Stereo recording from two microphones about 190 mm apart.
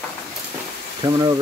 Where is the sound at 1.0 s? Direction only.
20° right (ahead or behind).